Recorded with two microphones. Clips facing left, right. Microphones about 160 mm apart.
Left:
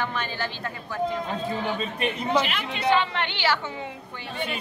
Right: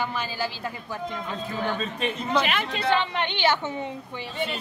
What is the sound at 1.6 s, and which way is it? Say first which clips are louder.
Speech: even; 10° left (ahead or behind).